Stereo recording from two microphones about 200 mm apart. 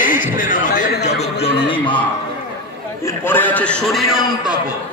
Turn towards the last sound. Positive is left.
turn(degrees=0)  # may be behind; listen again after turning